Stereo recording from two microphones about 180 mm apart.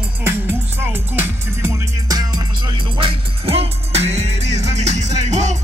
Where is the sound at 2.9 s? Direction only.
35° right (ahead or behind).